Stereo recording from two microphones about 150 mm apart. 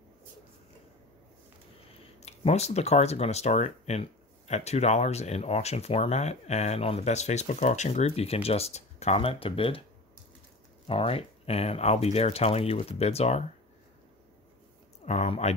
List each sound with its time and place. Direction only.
2.1 s speech: 45° left (ahead or behind)
10.9 s speech: 40° left (ahead or behind)
15.0 s speech: 45° left (ahead or behind)